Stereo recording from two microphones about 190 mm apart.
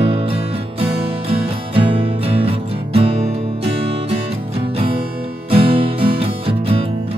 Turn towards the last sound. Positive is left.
turn(degrees=-30)  # may be behind; listen again after turning